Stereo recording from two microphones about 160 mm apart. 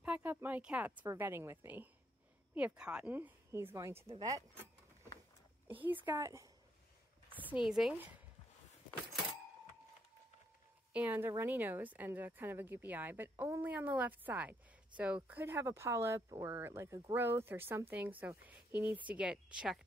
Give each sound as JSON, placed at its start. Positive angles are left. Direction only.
{"t": 0.0, "sound": "speech", "side_deg": -10}
{"t": 6.0, "sound": "speech", "side_deg": -15}
{"t": 7.4, "sound": "speech", "side_deg": -5}
{"t": 10.9, "sound": "speech", "side_deg": -10}